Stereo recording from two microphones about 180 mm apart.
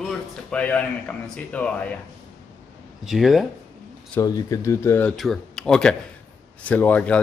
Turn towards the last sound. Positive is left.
turn(degrees=10)  # may be behind; listen again after turning